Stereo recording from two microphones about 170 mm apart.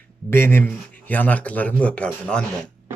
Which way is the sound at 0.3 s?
15° left (ahead or behind).